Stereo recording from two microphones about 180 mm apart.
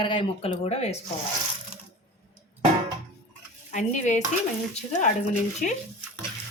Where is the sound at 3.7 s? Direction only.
40° left (ahead or behind).